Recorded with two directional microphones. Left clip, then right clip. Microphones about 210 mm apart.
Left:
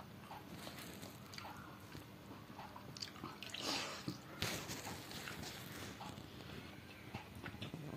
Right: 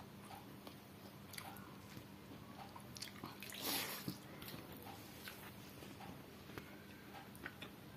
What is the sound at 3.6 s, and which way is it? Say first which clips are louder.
Bathtub: left 1 dB; 20° right (ahead or behind).